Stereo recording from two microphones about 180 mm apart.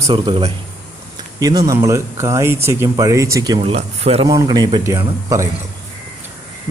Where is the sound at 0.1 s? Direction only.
30° right (ahead or behind).